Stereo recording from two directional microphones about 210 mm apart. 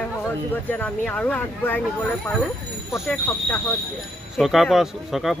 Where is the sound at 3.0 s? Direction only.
10° left (ahead or behind).